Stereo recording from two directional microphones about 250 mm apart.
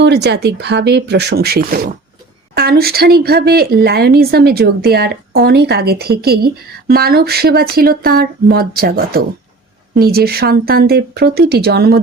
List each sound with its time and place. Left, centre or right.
0.0 s speech: right